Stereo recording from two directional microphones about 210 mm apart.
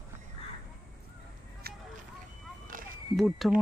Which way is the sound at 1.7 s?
50° right (ahead or behind).